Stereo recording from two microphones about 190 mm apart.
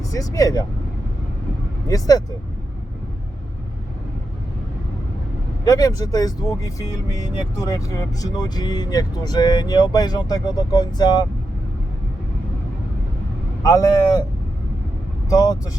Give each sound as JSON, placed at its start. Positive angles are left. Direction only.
{"t": 0.0, "sound": "speech", "side_deg": 20}
{"t": 1.9, "sound": "speech", "side_deg": 20}
{"t": 5.6, "sound": "speech", "side_deg": 20}
{"t": 13.6, "sound": "speech", "side_deg": 20}
{"t": 15.3, "sound": "speech", "side_deg": 20}